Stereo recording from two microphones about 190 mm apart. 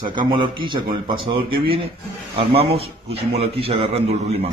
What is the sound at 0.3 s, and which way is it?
A man's voice, 25° right (ahead or behind).